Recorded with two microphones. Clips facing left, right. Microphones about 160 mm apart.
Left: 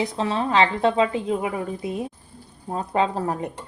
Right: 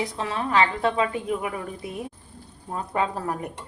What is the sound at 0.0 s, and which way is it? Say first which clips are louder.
A woman's voice: left 4 dB; 25° left (ahead or behind).